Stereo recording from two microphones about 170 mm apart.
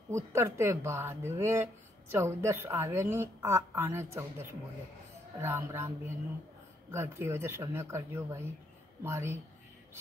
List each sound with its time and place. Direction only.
0.1 s speech: 15° right (ahead or behind)